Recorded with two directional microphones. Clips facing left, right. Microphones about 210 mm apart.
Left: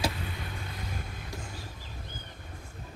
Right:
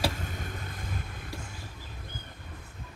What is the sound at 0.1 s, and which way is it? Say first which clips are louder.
Vehicle: right 1 dB; 45° right (ahead or behind).